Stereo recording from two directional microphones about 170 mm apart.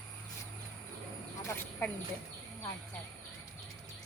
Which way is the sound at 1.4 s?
15° left (ahead or behind).